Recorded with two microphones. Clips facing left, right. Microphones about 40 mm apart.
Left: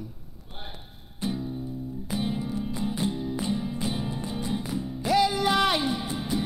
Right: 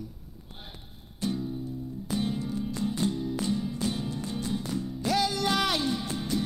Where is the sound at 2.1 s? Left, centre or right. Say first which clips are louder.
Left 1 dB; centre.